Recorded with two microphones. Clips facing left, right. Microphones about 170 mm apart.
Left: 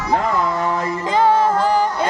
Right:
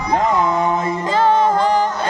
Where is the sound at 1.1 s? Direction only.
10° left (ahead or behind).